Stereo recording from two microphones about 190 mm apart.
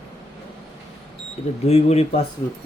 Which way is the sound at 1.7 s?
35° left (ahead or behind).